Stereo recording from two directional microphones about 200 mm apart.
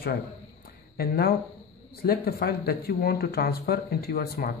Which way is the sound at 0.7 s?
50° left (ahead or behind).